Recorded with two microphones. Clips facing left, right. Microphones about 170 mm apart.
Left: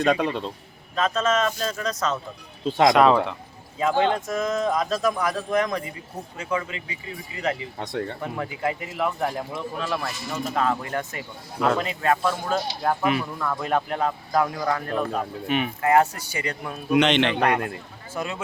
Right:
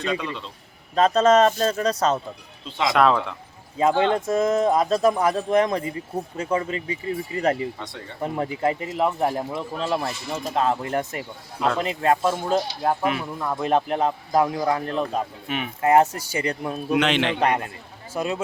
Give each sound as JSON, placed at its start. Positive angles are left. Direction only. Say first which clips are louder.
{"t": 0.0, "sound": "a man's voice", "louder": "left 5 dB", "side_deg": 50}
{"t": 0.9, "sound": "speech", "louder": "right 6 dB", "side_deg": -35}
{"t": 2.6, "sound": "a man's voice", "louder": "left 7 dB", "side_deg": 50}
{"t": 2.9, "sound": "speech", "louder": "right 3 dB", "side_deg": 0}
{"t": 3.8, "sound": "speech", "louder": "right 2 dB", "side_deg": -30}
{"t": 7.8, "sound": "a man's voice", "louder": "left 8 dB", "side_deg": 55}
{"t": 8.2, "sound": "speech", "louder": "right 4 dB", "side_deg": -30}
{"t": 13.0, "sound": "speech", "louder": "left 1 dB", "side_deg": 0}
{"t": 13.4, "sound": "speech", "louder": "right 3 dB", "side_deg": -25}
{"t": 15.4, "sound": "speech", "louder": "left 4 dB", "side_deg": 0}
{"t": 15.8, "sound": "speech", "louder": "right 4 dB", "side_deg": -25}
{"t": 16.9, "sound": "speech", "louder": "left 2 dB", "side_deg": -5}
{"t": 18.1, "sound": "speech", "louder": "right 4 dB", "side_deg": -30}